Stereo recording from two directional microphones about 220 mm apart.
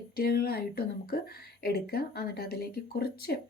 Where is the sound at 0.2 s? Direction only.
45° left (ahead or behind).